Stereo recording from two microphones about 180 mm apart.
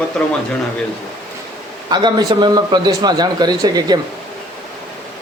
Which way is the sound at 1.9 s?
25° right (ahead or behind).